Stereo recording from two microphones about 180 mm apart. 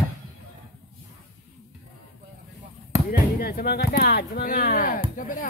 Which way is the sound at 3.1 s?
55° left (ahead or behind).